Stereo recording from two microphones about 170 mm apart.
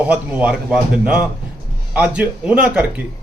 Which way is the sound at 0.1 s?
5° right (ahead or behind).